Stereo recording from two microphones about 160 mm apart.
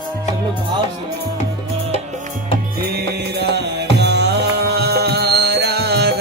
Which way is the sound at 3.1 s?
90° right.